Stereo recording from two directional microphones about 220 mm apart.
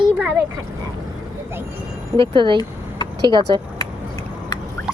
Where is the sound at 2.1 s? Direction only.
20° right (ahead or behind).